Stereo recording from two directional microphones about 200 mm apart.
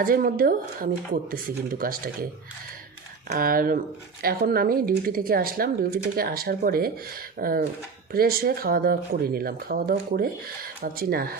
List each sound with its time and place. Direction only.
0.0 s speech: 45° right (ahead or behind)
3.2 s speech: 45° right (ahead or behind)